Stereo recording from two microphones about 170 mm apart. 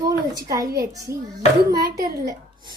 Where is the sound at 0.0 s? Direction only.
20° right (ahead or behind).